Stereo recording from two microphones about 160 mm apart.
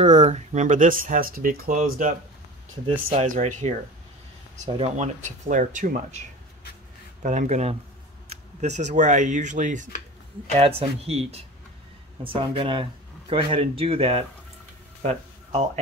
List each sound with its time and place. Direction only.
0.0 s speech: 45° right (ahead or behind)
3.2 s speech: 50° right (ahead or behind)
4.7 s speech: 45° right (ahead or behind)
7.2 s speech: 50° right (ahead or behind)
10.6 s speech: 35° right (ahead or behind)
15.0 s a sound: 45° right (ahead or behind)